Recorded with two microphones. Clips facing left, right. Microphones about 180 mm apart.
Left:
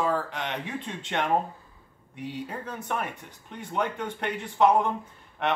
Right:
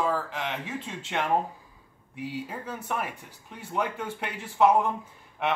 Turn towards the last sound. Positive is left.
turn(degrees=-5)  # may be behind; listen again after turning